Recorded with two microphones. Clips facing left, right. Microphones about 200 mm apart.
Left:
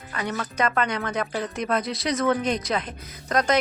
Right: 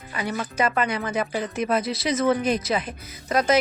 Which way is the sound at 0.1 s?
10° right (ahead or behind).